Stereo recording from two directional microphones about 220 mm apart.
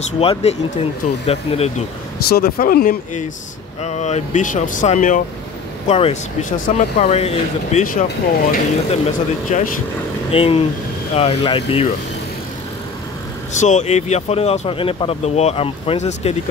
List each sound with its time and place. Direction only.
0.2 s speech: 25° left (ahead or behind)
2.2 s speech: 45° left (ahead or behind); by 11.9 s 25° left (ahead or behind)
13.5 s speech: 35° left (ahead or behind)